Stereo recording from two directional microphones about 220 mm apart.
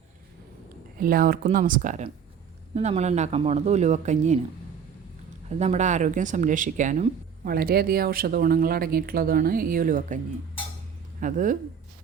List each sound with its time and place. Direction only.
0.9 s speech: 40° right (ahead or behind)
5.5 s speech: 30° right (ahead or behind)
11.2 s speech: 35° right (ahead or behind)